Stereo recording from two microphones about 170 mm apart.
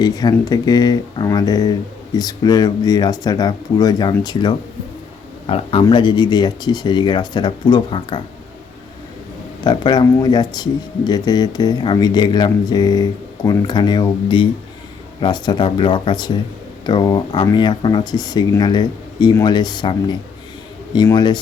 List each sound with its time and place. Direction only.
0.0 s speech: 25° left (ahead or behind)
5.5 s speech: 35° left (ahead or behind)
5.8 s speech: 25° left (ahead or behind)
9.6 s speech: 25° left (ahead or behind)